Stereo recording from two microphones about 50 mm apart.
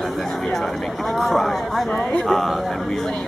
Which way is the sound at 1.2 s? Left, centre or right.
Centre.